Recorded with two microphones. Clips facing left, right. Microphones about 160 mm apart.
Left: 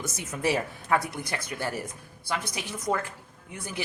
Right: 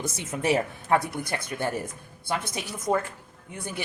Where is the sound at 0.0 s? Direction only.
30° right (ahead or behind).